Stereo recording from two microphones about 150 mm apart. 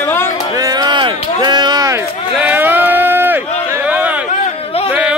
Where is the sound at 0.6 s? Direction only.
25° right (ahead or behind).